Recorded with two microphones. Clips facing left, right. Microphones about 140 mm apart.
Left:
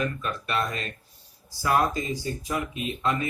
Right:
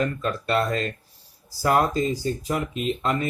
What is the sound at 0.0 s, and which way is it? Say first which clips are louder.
Speech: right 4 dB; 40° right (ahead or behind).